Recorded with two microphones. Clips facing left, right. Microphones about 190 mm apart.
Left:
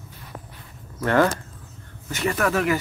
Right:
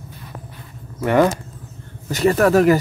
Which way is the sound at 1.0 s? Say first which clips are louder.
Right 4 dB; 15° right (ahead or behind).